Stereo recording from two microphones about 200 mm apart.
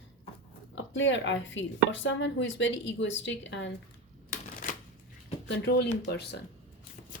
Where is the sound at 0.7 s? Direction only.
70° left (ahead or behind).